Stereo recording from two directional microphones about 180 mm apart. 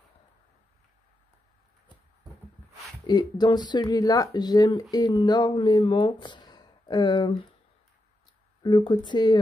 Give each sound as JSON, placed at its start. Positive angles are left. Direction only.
{"t": 3.1, "sound": "speech", "side_deg": 25}
{"t": 8.6, "sound": "speech", "side_deg": 25}